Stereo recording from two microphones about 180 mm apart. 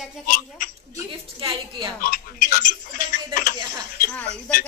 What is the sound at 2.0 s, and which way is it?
Tick-tock, 50° left (ahead or behind).